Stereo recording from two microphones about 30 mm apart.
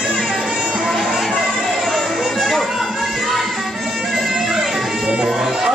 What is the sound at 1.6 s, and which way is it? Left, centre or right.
Music, centre.